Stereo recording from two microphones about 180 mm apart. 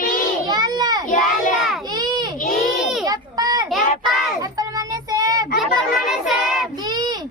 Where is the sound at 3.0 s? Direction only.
20° right (ahead or behind).